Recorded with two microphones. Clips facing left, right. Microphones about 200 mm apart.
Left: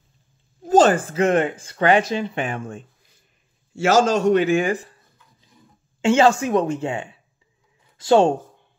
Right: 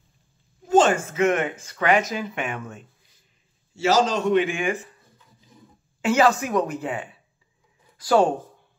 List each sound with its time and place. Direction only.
0.7 s speech: 35° left (ahead or behind)
3.7 s a man's voice: 50° left (ahead or behind)
5.9 s speech: 25° left (ahead or behind)